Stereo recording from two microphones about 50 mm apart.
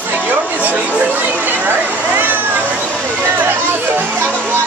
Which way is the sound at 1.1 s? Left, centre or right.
Right.